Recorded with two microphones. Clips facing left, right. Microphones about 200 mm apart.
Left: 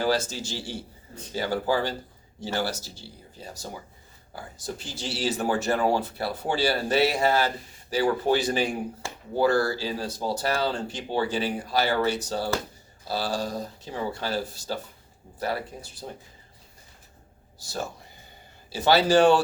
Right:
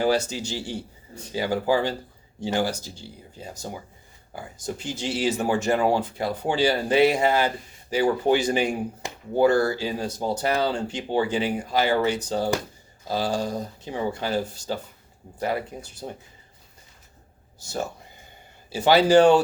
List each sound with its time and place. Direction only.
0.3 s speech: 15° right (ahead or behind)
18.7 s speech: 15° right (ahead or behind)